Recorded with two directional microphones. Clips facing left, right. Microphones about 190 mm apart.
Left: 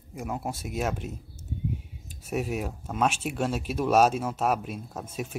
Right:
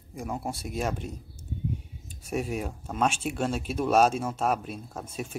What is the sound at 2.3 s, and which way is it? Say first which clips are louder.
Speech: left 1 dB; 5° left (ahead or behind).